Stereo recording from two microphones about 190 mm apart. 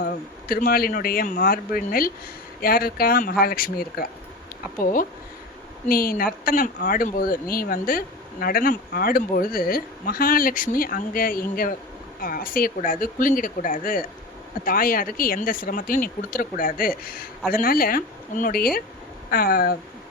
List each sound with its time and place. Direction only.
0.0 s speech: 50° left (ahead or behind)